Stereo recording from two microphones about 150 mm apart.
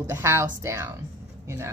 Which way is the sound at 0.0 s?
15° right (ahead or behind).